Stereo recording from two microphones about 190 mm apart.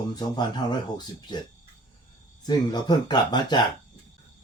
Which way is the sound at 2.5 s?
20° left (ahead or behind).